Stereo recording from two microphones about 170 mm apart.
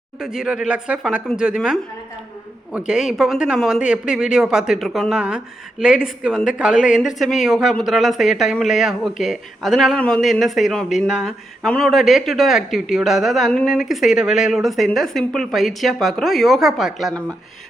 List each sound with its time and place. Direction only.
0.2 s speech: 5° right (ahead or behind)
6.7 s speech: 50° left (ahead or behind)
7.2 s speech: centre (ahead or behind)